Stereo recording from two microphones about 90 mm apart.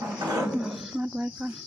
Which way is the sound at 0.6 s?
Centre (ahead or behind).